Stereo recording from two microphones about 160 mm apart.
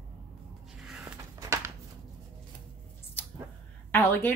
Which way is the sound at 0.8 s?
5° right (ahead or behind).